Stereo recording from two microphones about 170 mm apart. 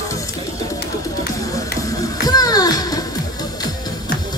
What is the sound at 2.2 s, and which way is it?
Music, 20° left (ahead or behind).